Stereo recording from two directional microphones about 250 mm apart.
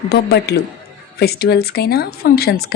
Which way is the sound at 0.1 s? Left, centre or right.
Left.